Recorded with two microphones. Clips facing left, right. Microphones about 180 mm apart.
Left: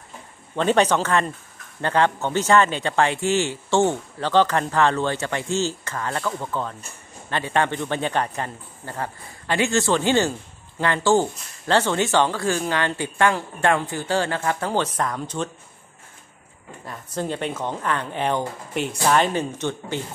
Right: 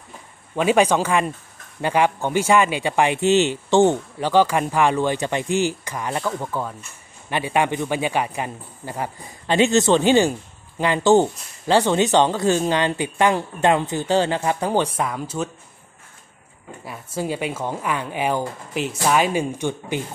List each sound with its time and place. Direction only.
0.6 s speech: 10° right (ahead or behind)
16.8 s speech: 10° right (ahead or behind)